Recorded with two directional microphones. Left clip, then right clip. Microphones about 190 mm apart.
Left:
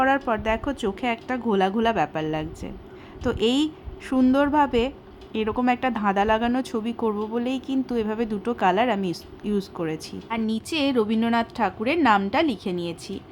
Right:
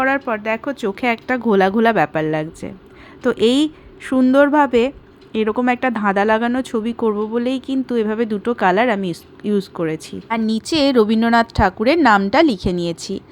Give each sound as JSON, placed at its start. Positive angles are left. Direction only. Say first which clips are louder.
{"t": 0.0, "sound": "speech", "louder": "right 3 dB", "side_deg": -5}
{"t": 0.9, "sound": "a woman's voice", "louder": "right 7 dB", "side_deg": -20}
{"t": 10.2, "sound": "a woman's voice", "louder": "right 8 dB", "side_deg": -35}